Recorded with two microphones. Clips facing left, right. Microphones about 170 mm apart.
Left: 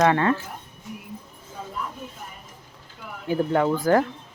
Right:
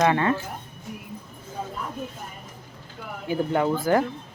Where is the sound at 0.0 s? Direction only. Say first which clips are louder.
Left 1 dB; 15° right (ahead or behind).